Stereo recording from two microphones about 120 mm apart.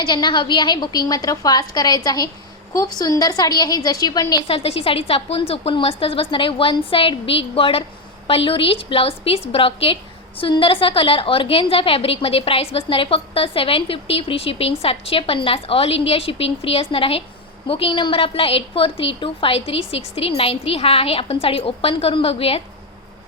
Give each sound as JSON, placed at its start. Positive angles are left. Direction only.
{"t": 0.0, "sound": "a woman's voice", "side_deg": 40}
{"t": 4.4, "sound": "a woman's voice", "side_deg": 55}